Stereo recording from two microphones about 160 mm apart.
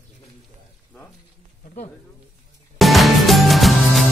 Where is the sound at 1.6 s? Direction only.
50° left (ahead or behind).